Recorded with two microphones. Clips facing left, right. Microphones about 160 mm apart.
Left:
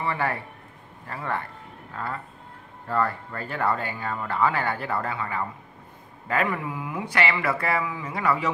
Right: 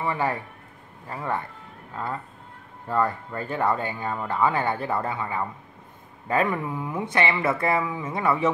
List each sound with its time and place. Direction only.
0.0 s speech: 15° right (ahead or behind)
2.9 s speech: 15° right (ahead or behind)